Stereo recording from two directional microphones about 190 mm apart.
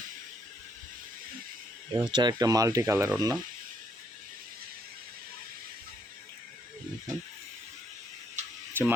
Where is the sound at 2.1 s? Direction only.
20° right (ahead or behind).